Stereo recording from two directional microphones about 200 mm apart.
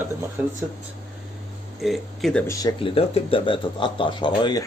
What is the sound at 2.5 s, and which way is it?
Speech, 20° left (ahead or behind).